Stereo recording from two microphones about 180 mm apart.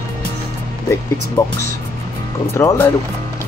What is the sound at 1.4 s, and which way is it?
Speech, 15° left (ahead or behind).